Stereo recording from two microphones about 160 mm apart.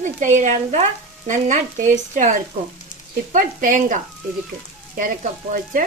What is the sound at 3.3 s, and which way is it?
Frying, 55° right (ahead or behind).